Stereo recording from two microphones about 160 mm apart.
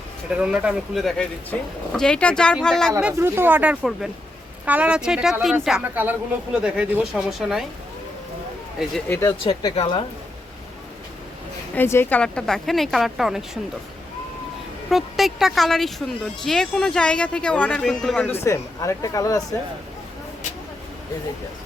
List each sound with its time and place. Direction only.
0.3 s speech: 10° right (ahead or behind)
3.0 s speech: 10° right (ahead or behind)
9.0 s speech: 15° left (ahead or behind)
9.4 s a woman's voice: 25° left (ahead or behind)
11.7 s speech: 15° left (ahead or behind); by 13.6 s centre (ahead or behind)
14.8 s speech: centre (ahead or behind)
18.4 s speech: 20° left (ahead or behind)